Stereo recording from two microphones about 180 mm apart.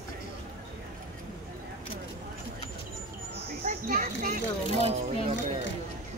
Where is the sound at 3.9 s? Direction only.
55° right (ahead or behind).